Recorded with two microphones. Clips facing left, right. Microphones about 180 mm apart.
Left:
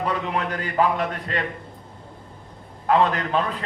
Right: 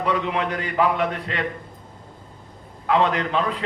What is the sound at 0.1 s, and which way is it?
A man's voice, 40° left (ahead or behind).